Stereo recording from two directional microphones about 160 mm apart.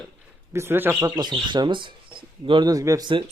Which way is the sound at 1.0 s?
25° right (ahead or behind).